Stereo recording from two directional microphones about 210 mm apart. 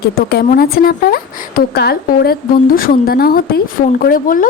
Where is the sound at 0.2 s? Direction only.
50° left (ahead or behind).